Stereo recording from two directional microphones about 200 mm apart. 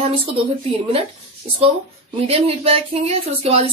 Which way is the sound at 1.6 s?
30° right (ahead or behind).